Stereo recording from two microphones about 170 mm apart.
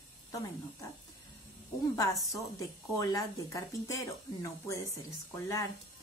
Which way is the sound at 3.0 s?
20° left (ahead or behind).